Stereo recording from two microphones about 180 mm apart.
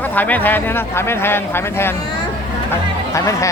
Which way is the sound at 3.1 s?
15° left (ahead or behind).